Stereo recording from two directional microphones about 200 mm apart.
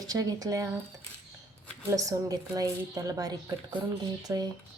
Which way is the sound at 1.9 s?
15° right (ahead or behind).